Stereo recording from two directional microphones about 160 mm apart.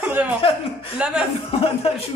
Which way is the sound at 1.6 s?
40° left (ahead or behind).